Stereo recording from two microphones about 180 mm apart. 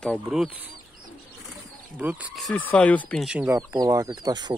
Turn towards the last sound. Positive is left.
turn(degrees=-20)  # may be behind; listen again after turning